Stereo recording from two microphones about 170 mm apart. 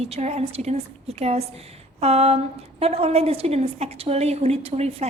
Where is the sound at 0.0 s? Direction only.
40° right (ahead or behind).